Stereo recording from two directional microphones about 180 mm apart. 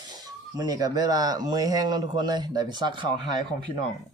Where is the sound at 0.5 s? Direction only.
20° right (ahead or behind).